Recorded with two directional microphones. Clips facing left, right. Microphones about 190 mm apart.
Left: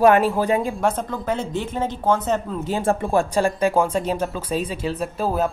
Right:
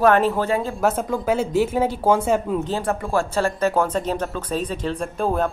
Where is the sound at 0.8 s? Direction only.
10° right (ahead or behind).